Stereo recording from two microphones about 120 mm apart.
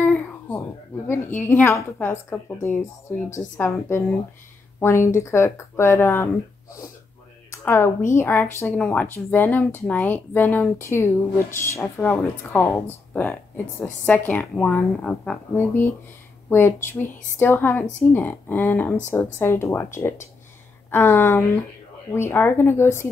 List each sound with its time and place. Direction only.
0.0 s a sound: 15° left (ahead or behind)
1.0 s speech: 20° left (ahead or behind)
7.5 s speech: 20° left (ahead or behind)